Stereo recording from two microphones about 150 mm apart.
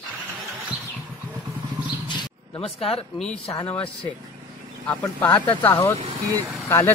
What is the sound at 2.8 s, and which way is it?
Speech, 40° left (ahead or behind).